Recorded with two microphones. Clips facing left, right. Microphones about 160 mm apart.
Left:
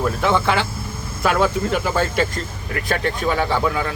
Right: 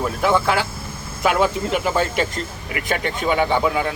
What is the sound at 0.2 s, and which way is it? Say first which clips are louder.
A man's voice: right 3 dB; 5° right (ahead or behind).